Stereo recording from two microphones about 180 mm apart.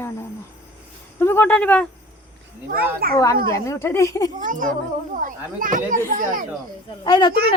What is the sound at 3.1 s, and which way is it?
Speech, 20° left (ahead or behind).